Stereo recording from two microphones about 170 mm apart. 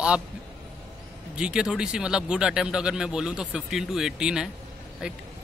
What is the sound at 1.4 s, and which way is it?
Speech, 5° right (ahead or behind).